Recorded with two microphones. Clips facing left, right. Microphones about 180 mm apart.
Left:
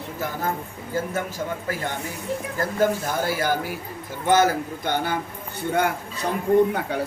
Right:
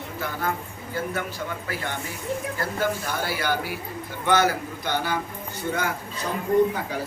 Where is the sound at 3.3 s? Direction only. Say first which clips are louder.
Left 1 dB; 45° left (ahead or behind).